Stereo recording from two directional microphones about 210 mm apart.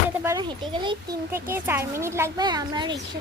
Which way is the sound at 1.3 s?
10° right (ahead or behind).